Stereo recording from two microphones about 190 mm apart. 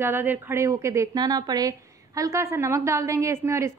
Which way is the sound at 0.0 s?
10° right (ahead or behind).